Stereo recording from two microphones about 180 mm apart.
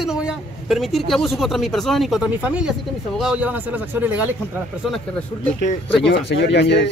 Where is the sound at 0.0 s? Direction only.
5° right (ahead or behind).